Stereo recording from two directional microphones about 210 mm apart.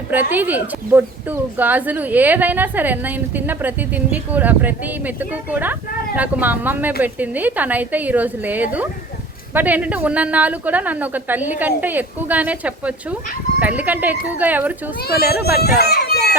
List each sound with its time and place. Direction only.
0.1 s speech: 10° right (ahead or behind)
15.0 s speech: 50° left (ahead or behind)